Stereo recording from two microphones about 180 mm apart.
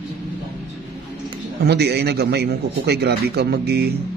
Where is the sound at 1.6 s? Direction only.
65° right (ahead or behind).